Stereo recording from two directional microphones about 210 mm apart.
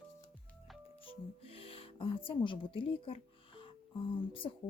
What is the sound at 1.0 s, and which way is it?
Speech, 25° left (ahead or behind).